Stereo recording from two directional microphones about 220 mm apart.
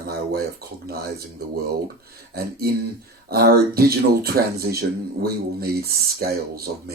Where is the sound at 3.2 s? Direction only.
45° right (ahead or behind).